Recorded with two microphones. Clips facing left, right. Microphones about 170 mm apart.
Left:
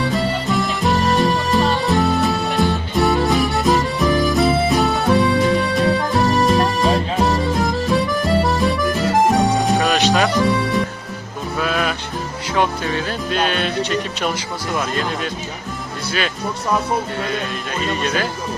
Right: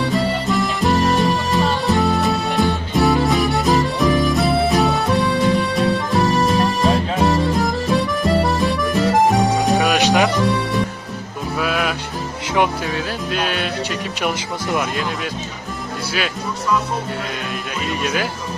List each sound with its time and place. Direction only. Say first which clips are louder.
0.0 s music: right 1 dB; centre (ahead or behind)
9.8 s music: right 1 dB; 15° right (ahead or behind)
10.2 s music: left 1 dB; centre (ahead or behind)
12.8 s speech: left 1 dB; 5° right (ahead or behind)
17.8 s speech: left 1 dB; 5° right (ahead or behind)